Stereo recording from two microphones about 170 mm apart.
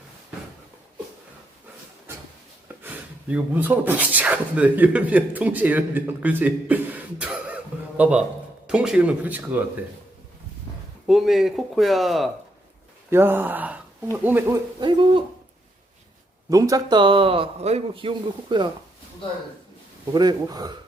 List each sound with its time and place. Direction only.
2.8 s speech: 10° right (ahead or behind)
11.0 s speech: centre (ahead or behind)
13.1 s speech: 15° right (ahead or behind)
14.8 s a man's voice: 30° right (ahead or behind)
16.5 s a man's voice: 20° right (ahead or behind)
20.1 s a man's voice: 25° right (ahead or behind)